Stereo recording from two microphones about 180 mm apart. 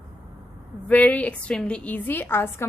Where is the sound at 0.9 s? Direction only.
10° left (ahead or behind).